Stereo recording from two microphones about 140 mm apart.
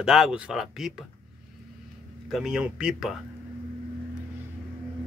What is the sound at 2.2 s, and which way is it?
Speech, centre (ahead or behind).